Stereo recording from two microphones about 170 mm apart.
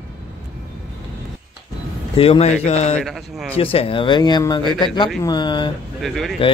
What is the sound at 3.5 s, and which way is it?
Speech, 35° left (ahead or behind).